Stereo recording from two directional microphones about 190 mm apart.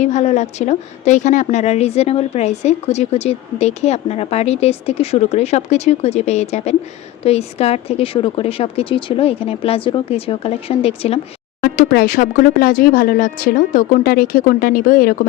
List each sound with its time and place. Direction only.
0.0 s a woman's voice: 35° left (ahead or behind)
11.6 s speech: 50° left (ahead or behind)